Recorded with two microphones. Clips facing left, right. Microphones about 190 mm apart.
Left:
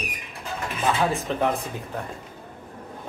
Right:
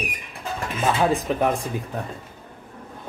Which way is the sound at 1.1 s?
15° right (ahead or behind).